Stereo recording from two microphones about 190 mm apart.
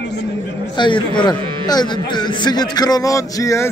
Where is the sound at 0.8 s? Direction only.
25° left (ahead or behind).